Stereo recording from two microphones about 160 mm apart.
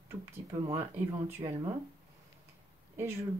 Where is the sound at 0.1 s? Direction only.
15° right (ahead or behind).